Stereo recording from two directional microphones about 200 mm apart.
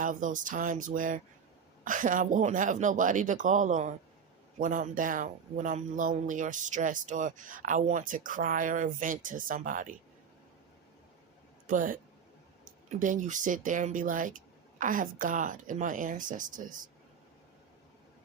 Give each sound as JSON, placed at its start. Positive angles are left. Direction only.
{"t": 0.0, "sound": "speech", "side_deg": -40}
{"t": 11.6, "sound": "speech", "side_deg": -40}